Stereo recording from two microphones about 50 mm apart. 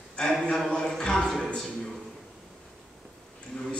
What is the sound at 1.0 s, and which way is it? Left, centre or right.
Speech, centre.